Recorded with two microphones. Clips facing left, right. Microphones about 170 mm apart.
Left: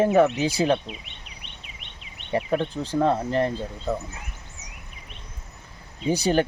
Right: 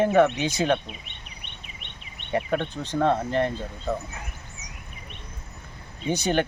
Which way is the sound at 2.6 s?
35° left (ahead or behind).